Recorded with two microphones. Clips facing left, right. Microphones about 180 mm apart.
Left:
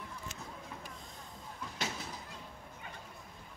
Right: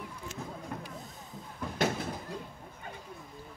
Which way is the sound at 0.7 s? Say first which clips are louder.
Right 7 dB; 55° right (ahead or behind).